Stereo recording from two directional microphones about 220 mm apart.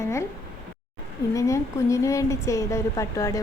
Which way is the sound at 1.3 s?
15° left (ahead or behind).